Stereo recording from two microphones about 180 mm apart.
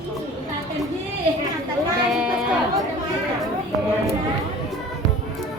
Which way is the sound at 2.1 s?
5° right (ahead or behind).